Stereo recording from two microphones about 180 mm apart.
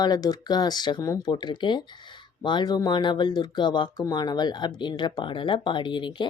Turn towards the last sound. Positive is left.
turn(degrees=25)  # may be behind; listen again after turning